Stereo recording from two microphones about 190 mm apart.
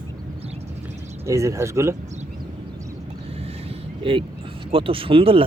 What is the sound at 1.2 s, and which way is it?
Speech, 15° right (ahead or behind).